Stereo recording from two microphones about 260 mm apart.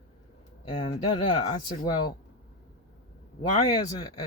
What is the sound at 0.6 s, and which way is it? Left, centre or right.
Speech, centre.